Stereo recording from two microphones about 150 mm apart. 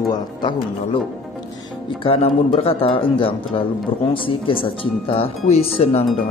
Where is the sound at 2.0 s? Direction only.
40° left (ahead or behind).